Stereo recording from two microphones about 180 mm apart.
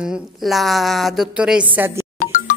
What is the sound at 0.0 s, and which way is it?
A woman's voice, centre (ahead or behind).